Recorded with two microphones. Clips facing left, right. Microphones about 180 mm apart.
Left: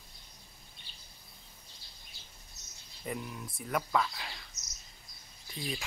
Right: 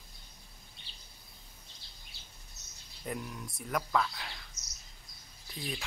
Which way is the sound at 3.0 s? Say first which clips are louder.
Even; centre (ahead or behind).